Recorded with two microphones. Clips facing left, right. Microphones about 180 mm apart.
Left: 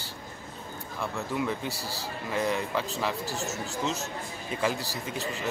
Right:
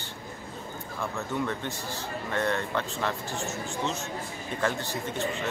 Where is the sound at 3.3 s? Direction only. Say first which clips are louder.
Even; 40° left (ahead or behind).